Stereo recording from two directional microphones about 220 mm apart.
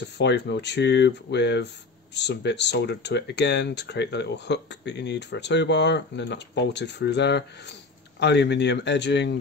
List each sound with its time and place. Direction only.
0.0 s speech: 50° left (ahead or behind)